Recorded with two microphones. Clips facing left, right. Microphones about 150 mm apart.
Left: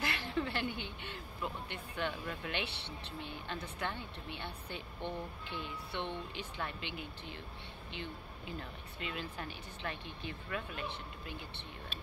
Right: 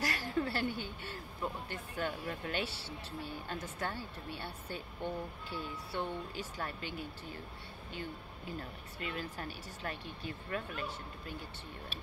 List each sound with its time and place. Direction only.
0.0 s a woman's voice: 40° right (ahead or behind)